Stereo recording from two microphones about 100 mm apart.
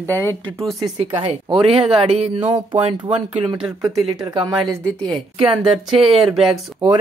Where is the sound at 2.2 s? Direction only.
75° right (ahead or behind); by 3.0 s 55° right (ahead or behind).